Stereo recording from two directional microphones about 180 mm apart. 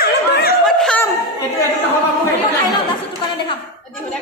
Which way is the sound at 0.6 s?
5° left (ahead or behind).